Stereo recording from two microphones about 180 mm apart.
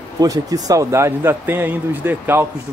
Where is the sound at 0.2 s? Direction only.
20° right (ahead or behind).